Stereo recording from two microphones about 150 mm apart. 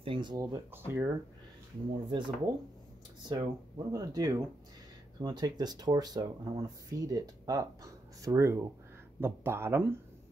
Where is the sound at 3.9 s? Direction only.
25° right (ahead or behind).